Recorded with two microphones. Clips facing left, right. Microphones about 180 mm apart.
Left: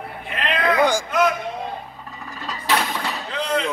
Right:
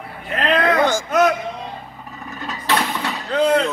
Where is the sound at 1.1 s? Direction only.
45° right (ahead or behind).